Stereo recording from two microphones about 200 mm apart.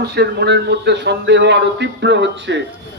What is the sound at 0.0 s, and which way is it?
A man's voice, 55° right (ahead or behind).